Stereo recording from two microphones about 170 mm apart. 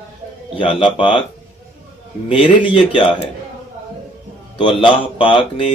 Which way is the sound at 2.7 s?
30° left (ahead or behind).